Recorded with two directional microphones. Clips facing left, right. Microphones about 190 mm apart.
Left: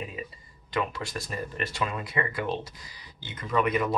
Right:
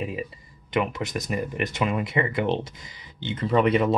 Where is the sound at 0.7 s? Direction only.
20° right (ahead or behind).